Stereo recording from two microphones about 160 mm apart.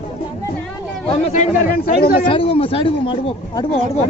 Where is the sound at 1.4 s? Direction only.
70° left (ahead or behind).